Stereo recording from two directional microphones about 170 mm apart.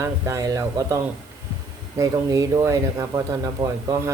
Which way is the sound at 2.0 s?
20° right (ahead or behind).